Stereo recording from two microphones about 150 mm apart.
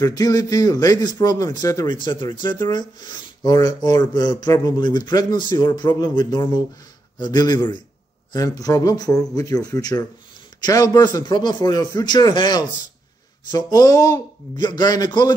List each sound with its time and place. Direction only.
0.0 s speech: 25° left (ahead or behind)